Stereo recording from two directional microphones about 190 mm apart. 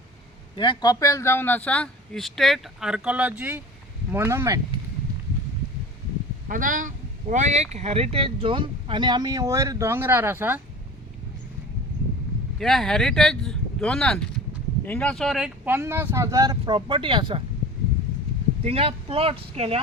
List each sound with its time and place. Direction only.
0.5 s speech: 25° left (ahead or behind); by 4.6 s 15° right (ahead or behind)
6.5 s speech: 45° right (ahead or behind); by 10.6 s 10° right (ahead or behind)
12.5 s speech: centre (ahead or behind); by 17.4 s 25° right (ahead or behind)
18.6 s speech: 30° right (ahead or behind)